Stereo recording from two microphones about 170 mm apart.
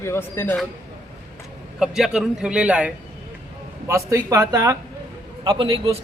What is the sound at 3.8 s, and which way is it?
A man's voice, 15° right (ahead or behind).